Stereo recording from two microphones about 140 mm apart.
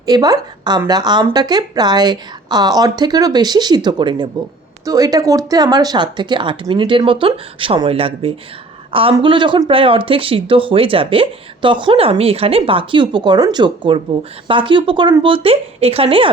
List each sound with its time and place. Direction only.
0.0 s a woman's voice: 30° right (ahead or behind)